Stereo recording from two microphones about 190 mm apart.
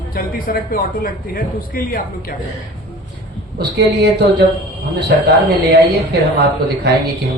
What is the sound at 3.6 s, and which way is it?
Speech, 60° right (ahead or behind).